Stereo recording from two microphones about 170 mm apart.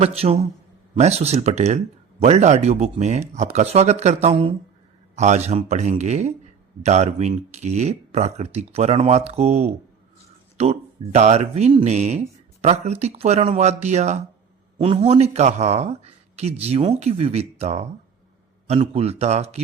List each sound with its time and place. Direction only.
0.0 s speech: 35° right (ahead or behind)